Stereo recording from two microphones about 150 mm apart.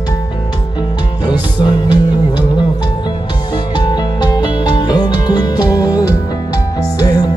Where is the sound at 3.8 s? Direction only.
30° left (ahead or behind).